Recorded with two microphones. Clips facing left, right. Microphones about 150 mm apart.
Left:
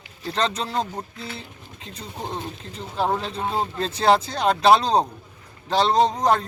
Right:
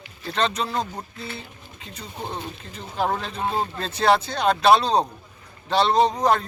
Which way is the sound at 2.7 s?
30° left (ahead or behind).